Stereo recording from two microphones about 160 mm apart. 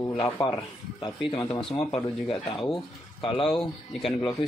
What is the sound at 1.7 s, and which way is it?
Speech, 40° left (ahead or behind).